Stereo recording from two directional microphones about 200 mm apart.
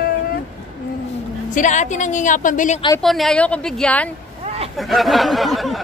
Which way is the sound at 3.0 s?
Centre (ahead or behind).